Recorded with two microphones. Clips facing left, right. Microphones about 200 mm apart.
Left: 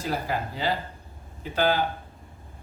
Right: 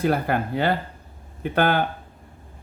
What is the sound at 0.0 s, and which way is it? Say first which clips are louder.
Speech: right 7 dB; 60° right (ahead or behind).